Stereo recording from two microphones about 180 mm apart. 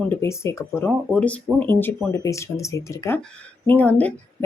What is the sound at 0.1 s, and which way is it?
Speech, 15° left (ahead or behind).